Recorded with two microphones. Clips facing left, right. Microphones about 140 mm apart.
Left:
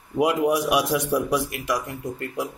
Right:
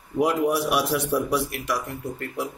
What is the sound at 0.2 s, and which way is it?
A man's voice, 15° left (ahead or behind).